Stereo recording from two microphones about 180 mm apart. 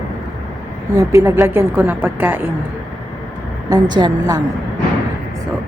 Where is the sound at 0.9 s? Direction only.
15° right (ahead or behind).